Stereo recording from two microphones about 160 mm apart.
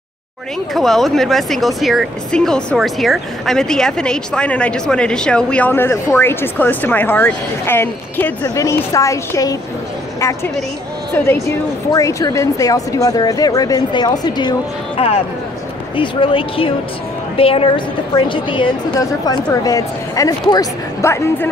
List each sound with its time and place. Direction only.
0.7 s speech: centre (ahead or behind); by 9.6 s 20° left (ahead or behind)
11.4 s speech: 20° left (ahead or behind)
16.0 s a woman's voice: 30° left (ahead or behind); by 21.5 s 15° left (ahead or behind)